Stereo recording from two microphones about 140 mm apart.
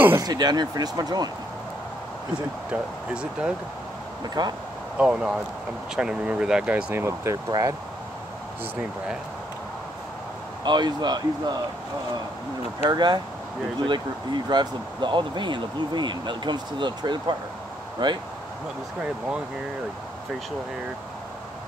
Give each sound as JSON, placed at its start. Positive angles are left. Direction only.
{"t": 0.2, "sound": "speech", "side_deg": -30}
{"t": 2.7, "sound": "speech", "side_deg": -5}
{"t": 4.2, "sound": "speech", "side_deg": -30}
{"t": 4.9, "sound": "speech", "side_deg": -5}
{"t": 10.6, "sound": "speech", "side_deg": -30}
{"t": 12.9, "sound": "speech", "side_deg": -30}